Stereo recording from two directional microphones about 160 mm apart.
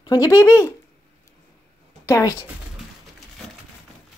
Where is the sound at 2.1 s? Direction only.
20° left (ahead or behind).